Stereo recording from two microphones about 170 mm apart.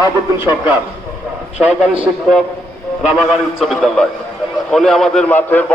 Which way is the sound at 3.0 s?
Centre (ahead or behind).